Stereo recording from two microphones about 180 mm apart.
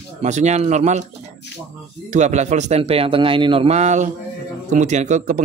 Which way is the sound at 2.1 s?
40° right (ahead or behind).